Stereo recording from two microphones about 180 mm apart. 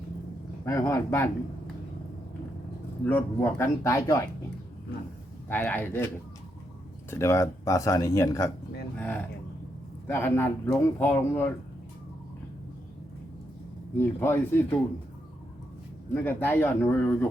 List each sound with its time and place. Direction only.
0.6 s speech: 15° left (ahead or behind)
3.1 s speech: 10° left (ahead or behind)
5.5 s speech: 10° left (ahead or behind)
7.1 s speech: 15° left (ahead or behind)
9.0 s speech: 10° left (ahead or behind)
14.0 s speech: 10° left (ahead or behind)
16.1 s speech: 10° left (ahead or behind)